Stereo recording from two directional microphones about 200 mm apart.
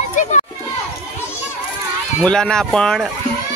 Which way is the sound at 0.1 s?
40° left (ahead or behind).